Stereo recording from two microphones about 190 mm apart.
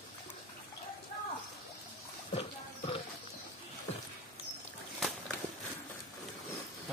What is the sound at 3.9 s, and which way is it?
Rodents, 30° left (ahead or behind).